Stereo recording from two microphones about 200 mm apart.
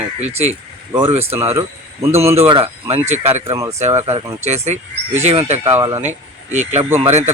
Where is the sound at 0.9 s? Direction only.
30° right (ahead or behind).